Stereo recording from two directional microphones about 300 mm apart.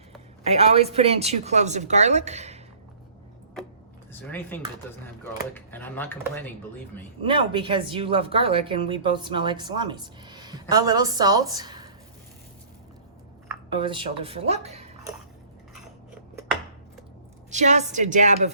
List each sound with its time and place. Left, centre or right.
0.4 s a woman's voice: right
4.1 s speech: centre
7.3 s speech: centre
13.5 s speech: centre
17.5 s a woman's voice: right